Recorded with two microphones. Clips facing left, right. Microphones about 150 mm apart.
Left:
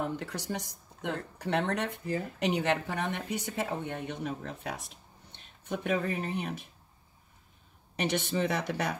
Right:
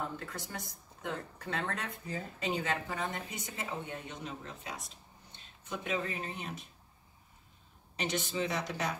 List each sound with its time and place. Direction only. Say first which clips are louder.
0.2 s speech: left 6 dB; 75° left (ahead or behind); by 6.7 s 60° left (ahead or behind)
7.9 s speech: left 5 dB; 60° left (ahead or behind)